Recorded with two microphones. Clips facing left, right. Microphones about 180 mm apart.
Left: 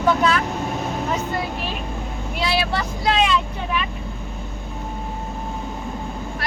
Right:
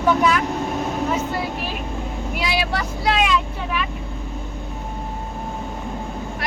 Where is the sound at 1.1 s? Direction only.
5° right (ahead or behind).